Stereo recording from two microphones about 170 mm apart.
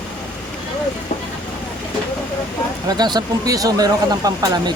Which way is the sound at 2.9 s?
25° right (ahead or behind).